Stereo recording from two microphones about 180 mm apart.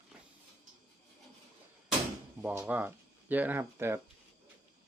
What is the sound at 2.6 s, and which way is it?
Speech, 10° right (ahead or behind).